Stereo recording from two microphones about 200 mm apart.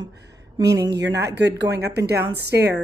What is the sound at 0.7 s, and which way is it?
Speech, 20° right (ahead or behind).